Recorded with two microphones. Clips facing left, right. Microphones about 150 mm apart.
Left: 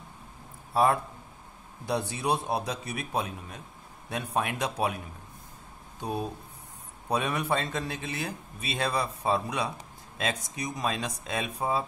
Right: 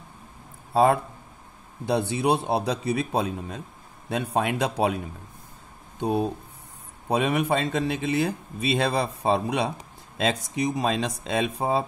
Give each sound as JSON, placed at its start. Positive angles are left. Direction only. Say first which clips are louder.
{"t": 1.9, "sound": "a man's voice", "louder": "right 6 dB", "side_deg": -25}